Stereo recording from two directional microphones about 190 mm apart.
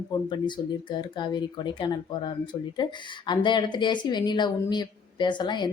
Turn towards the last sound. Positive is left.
turn(degrees=25)  # may be behind; listen again after turning